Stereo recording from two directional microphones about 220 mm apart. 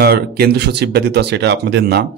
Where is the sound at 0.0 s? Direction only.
45° right (ahead or behind).